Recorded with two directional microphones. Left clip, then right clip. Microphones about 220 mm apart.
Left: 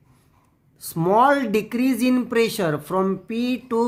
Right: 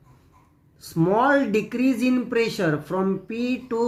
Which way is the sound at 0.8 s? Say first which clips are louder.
Left 3 dB; 40° left (ahead or behind).